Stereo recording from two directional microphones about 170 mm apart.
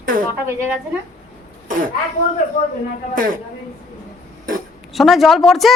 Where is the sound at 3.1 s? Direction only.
55° right (ahead or behind).